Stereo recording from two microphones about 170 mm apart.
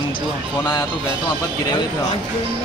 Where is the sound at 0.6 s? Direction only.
25° left (ahead or behind).